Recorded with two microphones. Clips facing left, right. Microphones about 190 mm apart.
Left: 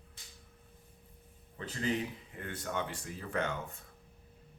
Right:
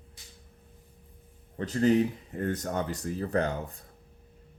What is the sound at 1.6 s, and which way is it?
Speech, 40° right (ahead or behind).